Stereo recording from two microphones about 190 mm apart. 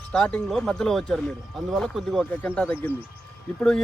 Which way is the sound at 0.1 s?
5° left (ahead or behind).